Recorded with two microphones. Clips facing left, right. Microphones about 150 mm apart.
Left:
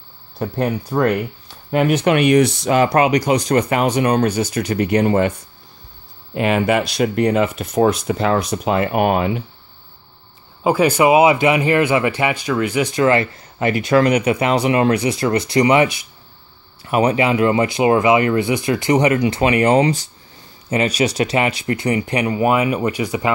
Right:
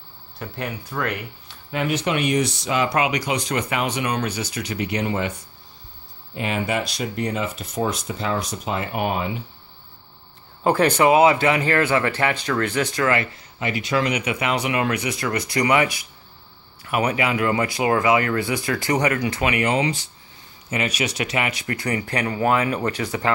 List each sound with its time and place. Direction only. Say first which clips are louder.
0.4 s speech: left 10 dB; 40° left (ahead or behind)
1.7 s speech: left 8 dB; 55° left (ahead or behind)
6.3 s speech: left 8 dB; 70° left (ahead or behind)
10.6 s speech: left 3 dB; 10° left (ahead or behind); by 13.3 s 25° left (ahead or behind)
13.4 s speech: left 7 dB; 50° left (ahead or behind); by 23.3 s 15° left (ahead or behind)